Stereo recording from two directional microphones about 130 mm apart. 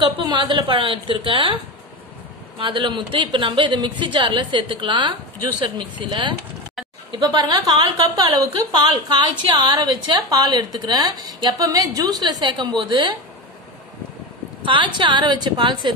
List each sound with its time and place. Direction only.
0.0 s a woman's voice: 35° right (ahead or behind)
2.6 s a woman's voice: 40° right (ahead or behind)
14.6 s a woman's voice: 40° right (ahead or behind)